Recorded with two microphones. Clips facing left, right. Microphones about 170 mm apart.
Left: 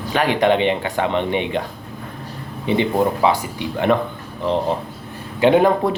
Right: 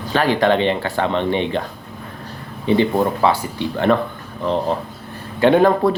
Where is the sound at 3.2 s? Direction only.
15° left (ahead or behind).